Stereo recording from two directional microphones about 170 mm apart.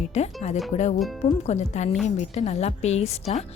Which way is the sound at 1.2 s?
40° left (ahead or behind).